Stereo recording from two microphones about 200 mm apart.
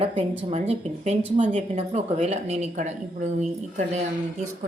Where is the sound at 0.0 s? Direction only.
25° right (ahead or behind).